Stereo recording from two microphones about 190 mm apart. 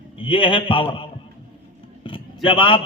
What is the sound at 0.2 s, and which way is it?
A man's voice, 25° left (ahead or behind).